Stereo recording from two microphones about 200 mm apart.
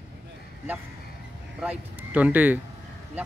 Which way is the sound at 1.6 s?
10° right (ahead or behind).